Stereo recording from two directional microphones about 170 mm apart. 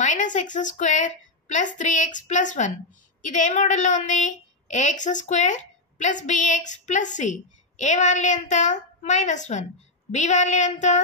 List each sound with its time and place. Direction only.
0.0 s a woman's voice: 45° left (ahead or behind)